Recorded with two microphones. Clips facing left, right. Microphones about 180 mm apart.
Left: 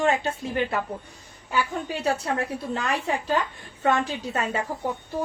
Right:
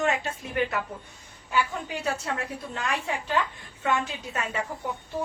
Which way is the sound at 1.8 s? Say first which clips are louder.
Left 4 dB; 35° left (ahead or behind).